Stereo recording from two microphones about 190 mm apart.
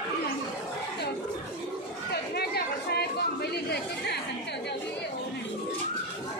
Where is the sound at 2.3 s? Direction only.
55° left (ahead or behind).